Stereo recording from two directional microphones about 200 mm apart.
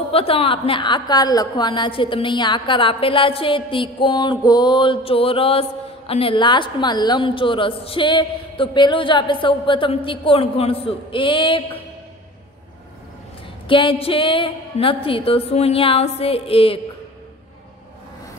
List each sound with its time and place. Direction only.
0.1 s a woman's voice: 30° left (ahead or behind)
13.7 s a woman's voice: 25° left (ahead or behind)